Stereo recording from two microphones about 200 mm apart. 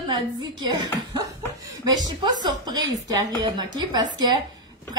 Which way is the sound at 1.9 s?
20° right (ahead or behind).